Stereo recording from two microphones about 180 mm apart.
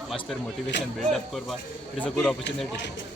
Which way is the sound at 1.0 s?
Centre (ahead or behind).